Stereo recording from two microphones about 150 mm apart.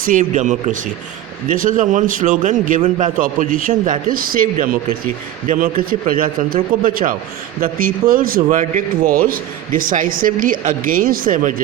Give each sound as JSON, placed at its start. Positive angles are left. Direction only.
{"t": 0.0, "sound": "a man's voice", "side_deg": -60}
{"t": 4.1, "sound": "speech", "side_deg": -70}